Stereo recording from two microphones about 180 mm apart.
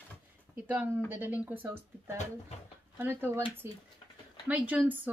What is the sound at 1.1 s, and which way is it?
Speech, 10° right (ahead or behind).